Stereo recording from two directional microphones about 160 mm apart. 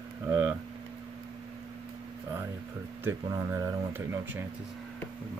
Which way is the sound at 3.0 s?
15° right (ahead or behind).